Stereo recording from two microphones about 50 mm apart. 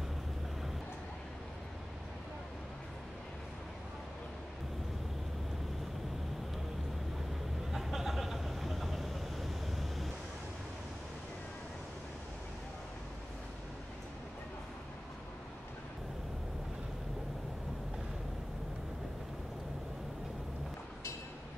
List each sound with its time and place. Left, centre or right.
7.7 s vehicle: centre